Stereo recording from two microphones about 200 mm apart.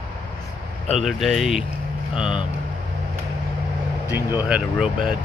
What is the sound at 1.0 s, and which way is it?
Speech, centre (ahead or behind).